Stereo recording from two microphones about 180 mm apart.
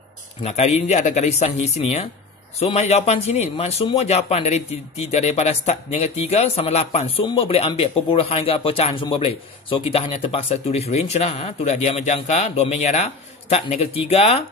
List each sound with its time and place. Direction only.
0.4 s a man's voice: 35° left (ahead or behind)